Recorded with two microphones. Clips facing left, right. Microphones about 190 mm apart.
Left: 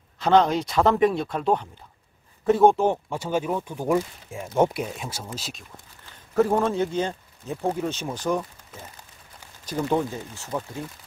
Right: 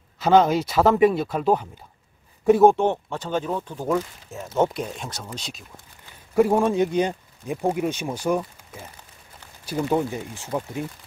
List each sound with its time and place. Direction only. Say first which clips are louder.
0.2 s a man's voice: right 2 dB; 5° right (ahead or behind)
2.7 s speech: even; 10° left (ahead or behind)
6.3 s speech: right 2 dB; 10° right (ahead or behind)